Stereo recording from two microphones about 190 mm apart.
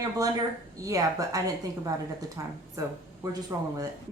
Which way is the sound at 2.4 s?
15° right (ahead or behind).